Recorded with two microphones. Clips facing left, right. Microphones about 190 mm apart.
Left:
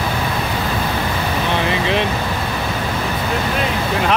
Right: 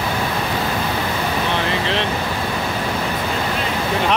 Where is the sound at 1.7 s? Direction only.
15° left (ahead or behind).